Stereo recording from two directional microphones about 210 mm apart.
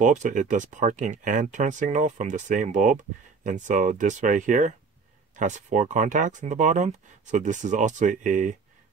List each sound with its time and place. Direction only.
0.0 s speech: 35° right (ahead or behind)